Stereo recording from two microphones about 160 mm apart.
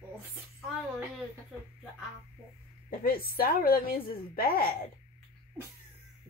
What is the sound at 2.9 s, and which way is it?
A woman's voice, 70° left (ahead or behind).